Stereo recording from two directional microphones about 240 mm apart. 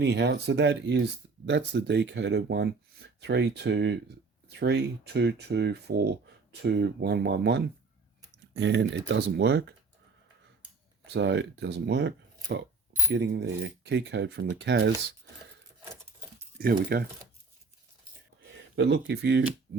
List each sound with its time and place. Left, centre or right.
0.0 s speech: right
11.0 s speech: right
16.6 s speech: right
18.5 s speech: right